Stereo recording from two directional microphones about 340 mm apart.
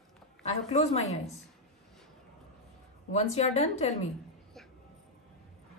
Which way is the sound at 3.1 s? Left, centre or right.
Centre.